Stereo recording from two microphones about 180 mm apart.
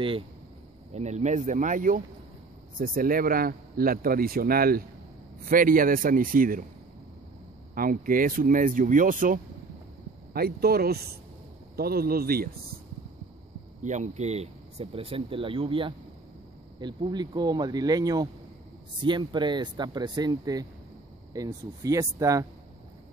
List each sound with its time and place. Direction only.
0.9 s a man's voice: 40° right (ahead or behind)
7.7 s a man's voice: 50° right (ahead or behind)
13.8 s speech: 40° right (ahead or behind); by 22.5 s 20° right (ahead or behind)